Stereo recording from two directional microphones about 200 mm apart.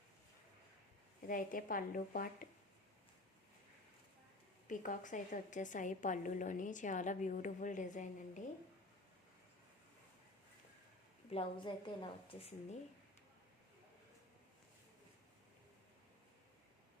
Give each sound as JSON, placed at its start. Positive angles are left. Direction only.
{"t": 1.3, "sound": "a woman's voice", "side_deg": 45}
{"t": 4.7, "sound": "a woman's voice", "side_deg": 40}
{"t": 11.3, "sound": "a woman's voice", "side_deg": 25}